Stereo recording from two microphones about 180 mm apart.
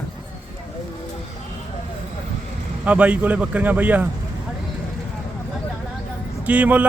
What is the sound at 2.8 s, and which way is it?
Speech, 5° right (ahead or behind).